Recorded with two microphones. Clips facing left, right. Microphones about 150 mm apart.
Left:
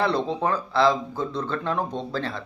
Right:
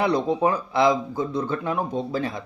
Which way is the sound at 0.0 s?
15° right (ahead or behind).